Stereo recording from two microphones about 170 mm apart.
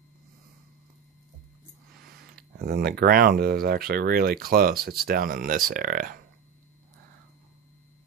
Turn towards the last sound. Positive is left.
turn(degrees=-55)  # may be behind; listen again after turning